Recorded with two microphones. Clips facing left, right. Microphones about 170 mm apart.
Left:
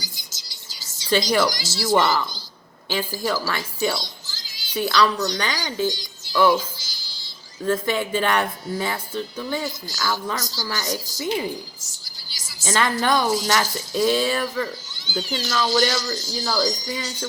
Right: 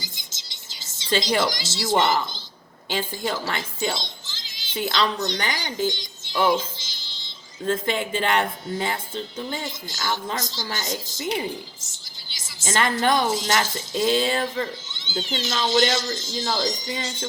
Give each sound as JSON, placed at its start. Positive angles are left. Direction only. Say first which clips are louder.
{"t": 0.0, "sound": "a sound", "louder": "left 1 dB", "side_deg": -25}
{"t": 1.0, "sound": "speech", "louder": "left 2 dB", "side_deg": -25}
{"t": 6.3, "sound": "music", "louder": "left 3 dB", "side_deg": -20}
{"t": 7.6, "sound": "speech", "louder": "left 2 dB", "side_deg": -25}
{"t": 12.5, "sound": "speech", "louder": "left 1 dB", "side_deg": -25}